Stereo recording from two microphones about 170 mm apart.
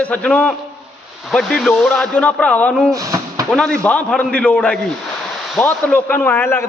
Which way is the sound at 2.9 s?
20° right (ahead or behind).